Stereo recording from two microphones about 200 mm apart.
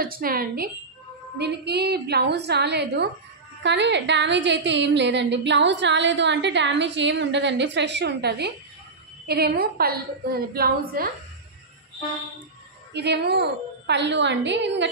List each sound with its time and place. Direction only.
0.0 s a woman's voice: 45° right (ahead or behind)
12.9 s a woman's voice: 55° right (ahead or behind)